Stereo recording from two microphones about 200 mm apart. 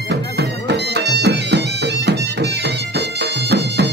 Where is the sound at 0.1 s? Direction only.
55° right (ahead or behind).